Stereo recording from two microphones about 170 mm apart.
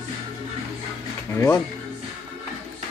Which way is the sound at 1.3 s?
15° left (ahead or behind).